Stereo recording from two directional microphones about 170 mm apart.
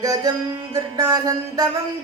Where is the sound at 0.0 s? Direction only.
20° right (ahead or behind).